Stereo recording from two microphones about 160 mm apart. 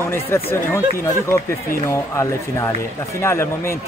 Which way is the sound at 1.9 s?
20° left (ahead or behind).